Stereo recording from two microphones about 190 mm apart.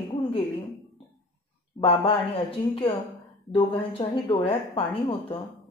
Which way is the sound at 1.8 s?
30° left (ahead or behind).